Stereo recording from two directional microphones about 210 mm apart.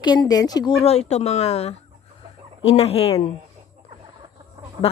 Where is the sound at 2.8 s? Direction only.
30° left (ahead or behind).